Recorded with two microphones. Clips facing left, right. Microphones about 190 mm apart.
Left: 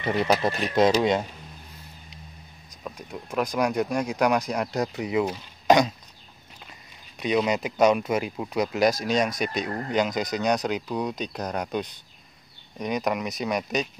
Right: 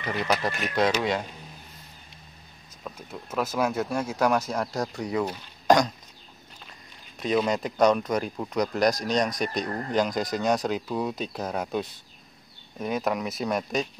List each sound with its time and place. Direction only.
0.0 s speech: 30° left (ahead or behind)
3.4 s speech: 5° right (ahead or behind)
7.2 s speech: centre (ahead or behind)